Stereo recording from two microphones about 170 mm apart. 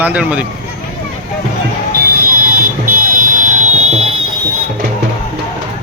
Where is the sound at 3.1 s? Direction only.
50° right (ahead or behind).